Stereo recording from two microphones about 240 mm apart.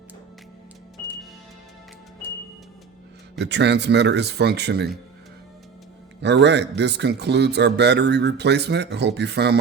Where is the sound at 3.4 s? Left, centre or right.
Right.